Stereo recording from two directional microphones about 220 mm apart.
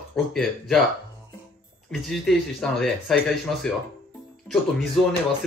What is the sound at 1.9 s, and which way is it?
Speech, centre (ahead or behind).